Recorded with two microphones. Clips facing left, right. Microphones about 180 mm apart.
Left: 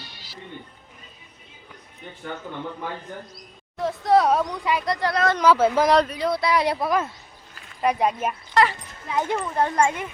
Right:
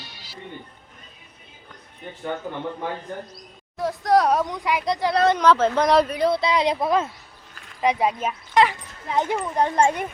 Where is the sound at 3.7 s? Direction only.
Centre (ahead or behind).